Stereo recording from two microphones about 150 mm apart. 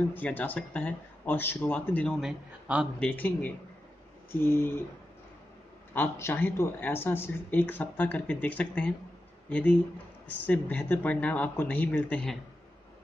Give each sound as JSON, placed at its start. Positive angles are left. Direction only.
{"t": 0.1, "sound": "speech", "side_deg": 10}
{"t": 2.1, "sound": "a man's voice", "side_deg": -5}
{"t": 3.0, "sound": "speech", "side_deg": 10}
{"t": 5.9, "sound": "speech", "side_deg": 15}